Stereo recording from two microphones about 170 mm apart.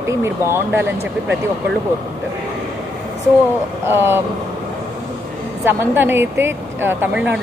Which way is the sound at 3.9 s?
15° right (ahead or behind).